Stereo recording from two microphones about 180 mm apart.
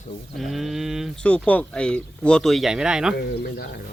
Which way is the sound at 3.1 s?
60° left (ahead or behind).